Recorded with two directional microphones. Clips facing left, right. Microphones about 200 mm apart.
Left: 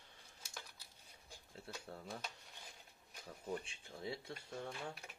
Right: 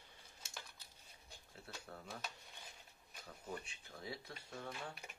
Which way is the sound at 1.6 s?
25° left (ahead or behind).